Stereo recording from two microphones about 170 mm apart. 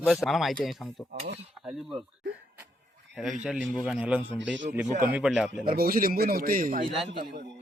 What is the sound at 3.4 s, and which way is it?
A man's voice, 5° right (ahead or behind).